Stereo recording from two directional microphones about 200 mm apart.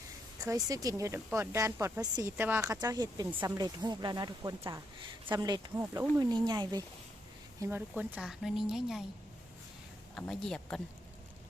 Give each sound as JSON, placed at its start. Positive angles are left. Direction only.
{"t": 0.4, "sound": "speech", "side_deg": -15}
{"t": 7.6, "sound": "a woman's voice", "side_deg": -10}
{"t": 10.2, "sound": "a woman's voice", "side_deg": 5}